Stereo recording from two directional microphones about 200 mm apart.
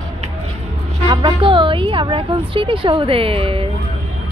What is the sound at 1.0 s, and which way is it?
Music, 25° right (ahead or behind).